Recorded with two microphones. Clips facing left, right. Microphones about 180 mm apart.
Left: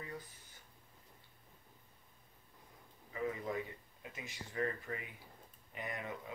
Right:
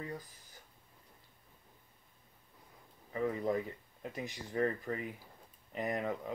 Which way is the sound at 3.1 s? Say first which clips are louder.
Right 6 dB; 40° right (ahead or behind).